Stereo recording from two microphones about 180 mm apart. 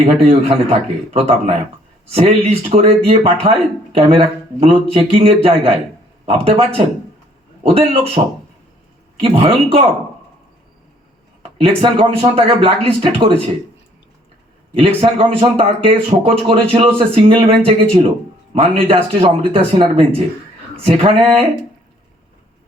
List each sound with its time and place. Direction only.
0.0 s a man's voice: 35° right (ahead or behind)
9.3 s a man's voice: 35° right (ahead or behind)
11.6 s a man's voice: 30° right (ahead or behind)
14.8 s a man's voice: 30° right (ahead or behind)